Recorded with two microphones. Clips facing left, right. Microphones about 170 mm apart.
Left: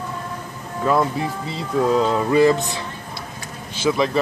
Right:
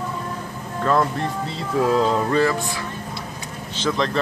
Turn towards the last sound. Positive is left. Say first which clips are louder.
# left 3 dB
turn(degrees=10)  # may be behind; listen again after turning